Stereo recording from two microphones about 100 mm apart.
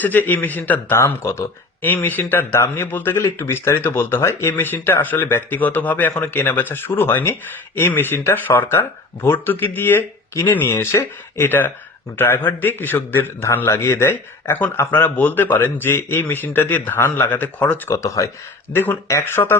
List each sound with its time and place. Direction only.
0.0 s speech: 20° left (ahead or behind)
17.8 s speech: 30° left (ahead or behind)
18.7 s speech: 20° left (ahead or behind)